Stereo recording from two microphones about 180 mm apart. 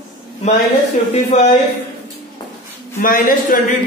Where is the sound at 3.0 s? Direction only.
50° left (ahead or behind).